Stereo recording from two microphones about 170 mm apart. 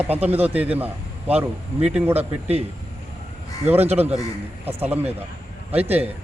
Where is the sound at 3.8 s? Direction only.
40° right (ahead or behind).